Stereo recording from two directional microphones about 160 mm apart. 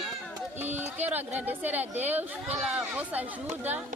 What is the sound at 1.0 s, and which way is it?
A woman's voice, 10° right (ahead or behind).